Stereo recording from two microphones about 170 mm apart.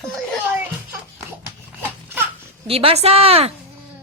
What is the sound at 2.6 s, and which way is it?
Speech, 35° right (ahead or behind).